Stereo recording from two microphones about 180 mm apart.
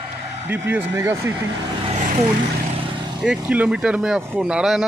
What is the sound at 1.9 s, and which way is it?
Vehicle, 45° right (ahead or behind).